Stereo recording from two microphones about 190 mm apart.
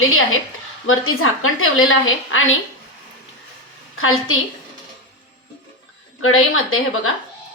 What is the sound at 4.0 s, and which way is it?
Speech, 90° left.